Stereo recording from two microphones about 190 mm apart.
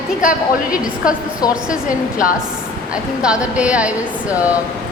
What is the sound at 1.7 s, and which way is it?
Speech, 45° left (ahead or behind).